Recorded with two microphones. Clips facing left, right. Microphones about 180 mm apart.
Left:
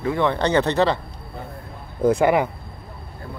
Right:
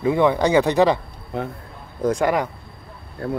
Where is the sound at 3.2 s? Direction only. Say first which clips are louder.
Right 12 dB; 70° right (ahead or behind).